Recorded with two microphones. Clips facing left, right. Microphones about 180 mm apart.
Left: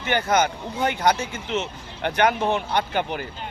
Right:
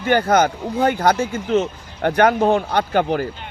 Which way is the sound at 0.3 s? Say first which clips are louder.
Right 5 dB; 55° right (ahead or behind).